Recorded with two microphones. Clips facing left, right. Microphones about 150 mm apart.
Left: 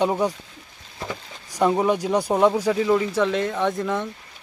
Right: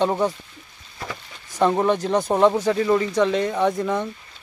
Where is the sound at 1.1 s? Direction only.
10° left (ahead or behind).